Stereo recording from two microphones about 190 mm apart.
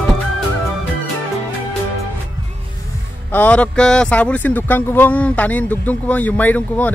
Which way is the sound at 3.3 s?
10° left (ahead or behind).